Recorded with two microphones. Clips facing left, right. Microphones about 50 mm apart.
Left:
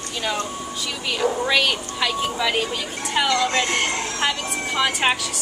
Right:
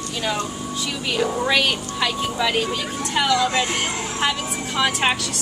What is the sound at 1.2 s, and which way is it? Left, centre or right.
Speech, centre.